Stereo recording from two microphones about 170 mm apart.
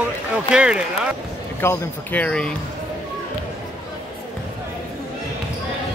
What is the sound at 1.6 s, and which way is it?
Speech, 10° left (ahead or behind).